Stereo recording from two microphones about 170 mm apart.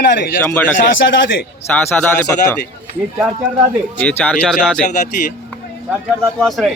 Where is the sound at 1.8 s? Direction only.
10° left (ahead or behind).